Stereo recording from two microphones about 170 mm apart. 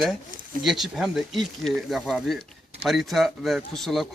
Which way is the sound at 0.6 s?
Centre (ahead or behind).